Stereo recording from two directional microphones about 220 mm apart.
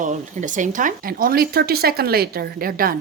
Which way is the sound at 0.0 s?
35° right (ahead or behind).